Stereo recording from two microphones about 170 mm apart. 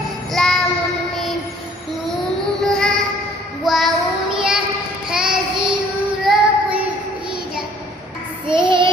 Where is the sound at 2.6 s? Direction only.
5° left (ahead or behind).